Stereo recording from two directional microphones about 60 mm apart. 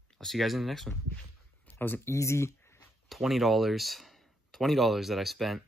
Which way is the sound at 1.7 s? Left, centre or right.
Left.